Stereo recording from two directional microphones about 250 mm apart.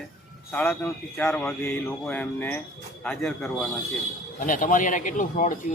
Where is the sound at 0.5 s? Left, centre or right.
Centre.